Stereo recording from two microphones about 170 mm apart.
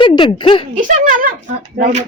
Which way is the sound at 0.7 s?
50° right (ahead or behind).